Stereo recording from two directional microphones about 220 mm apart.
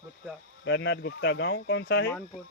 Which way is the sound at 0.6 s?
55° left (ahead or behind).